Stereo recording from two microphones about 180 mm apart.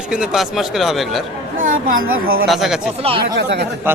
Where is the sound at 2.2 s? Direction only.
55° right (ahead or behind).